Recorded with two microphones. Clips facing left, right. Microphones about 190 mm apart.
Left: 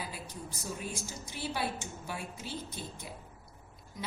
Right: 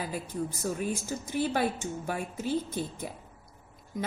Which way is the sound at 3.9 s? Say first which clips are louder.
Right 8 dB; 50° right (ahead or behind).